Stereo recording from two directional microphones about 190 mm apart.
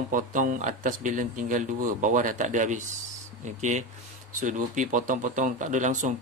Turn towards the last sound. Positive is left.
turn(degrees=-40)  # may be behind; listen again after turning